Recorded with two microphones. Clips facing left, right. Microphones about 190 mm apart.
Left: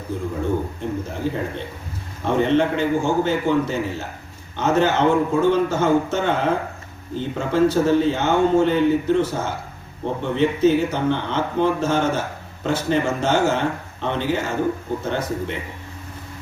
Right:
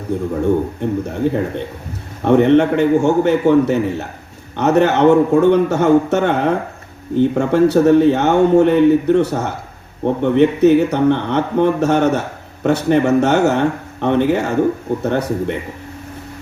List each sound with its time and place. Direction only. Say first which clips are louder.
0.1 s a man's voice: right 7 dB; 70° right (ahead or behind)